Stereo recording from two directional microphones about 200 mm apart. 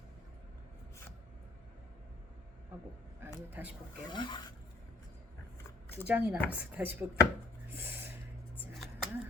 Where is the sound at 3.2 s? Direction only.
10° right (ahead or behind).